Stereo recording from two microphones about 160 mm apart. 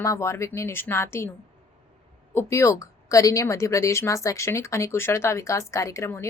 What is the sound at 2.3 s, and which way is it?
A woman's voice, 15° left (ahead or behind).